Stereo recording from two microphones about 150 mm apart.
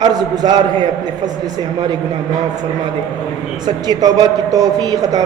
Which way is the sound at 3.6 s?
25° right (ahead or behind).